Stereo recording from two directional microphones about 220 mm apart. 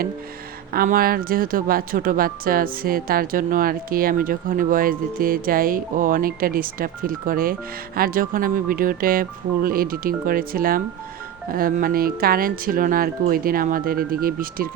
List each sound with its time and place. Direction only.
0.7 s speech: 40° right (ahead or behind)